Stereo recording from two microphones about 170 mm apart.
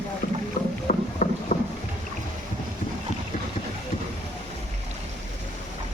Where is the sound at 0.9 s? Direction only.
45° left (ahead or behind).